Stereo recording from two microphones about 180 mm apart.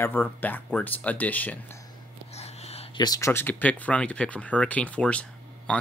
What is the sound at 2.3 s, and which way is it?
Whispering, 35° left (ahead or behind).